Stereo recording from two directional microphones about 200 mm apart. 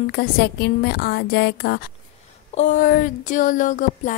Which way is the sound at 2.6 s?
40° left (ahead or behind).